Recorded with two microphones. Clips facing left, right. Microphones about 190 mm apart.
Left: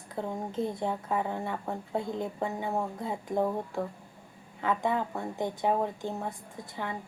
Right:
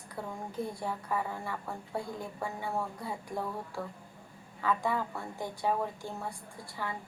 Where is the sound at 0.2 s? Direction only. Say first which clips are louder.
Left 5 dB; 20° left (ahead or behind).